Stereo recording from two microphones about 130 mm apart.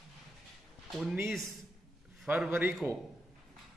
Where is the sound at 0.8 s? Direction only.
5° right (ahead or behind).